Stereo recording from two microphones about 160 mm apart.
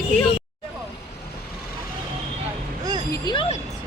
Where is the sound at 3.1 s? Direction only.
25° left (ahead or behind).